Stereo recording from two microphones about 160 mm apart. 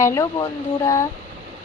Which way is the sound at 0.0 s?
20° left (ahead or behind).